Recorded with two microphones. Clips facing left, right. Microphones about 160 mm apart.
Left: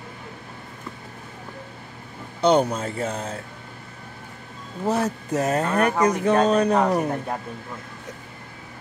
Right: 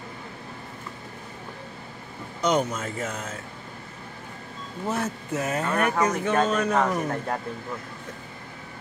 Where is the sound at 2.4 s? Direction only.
30° left (ahead or behind).